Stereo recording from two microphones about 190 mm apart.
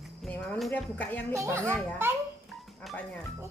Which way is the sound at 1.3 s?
15° right (ahead or behind).